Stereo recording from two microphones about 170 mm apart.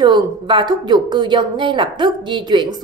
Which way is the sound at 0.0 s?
25° right (ahead or behind).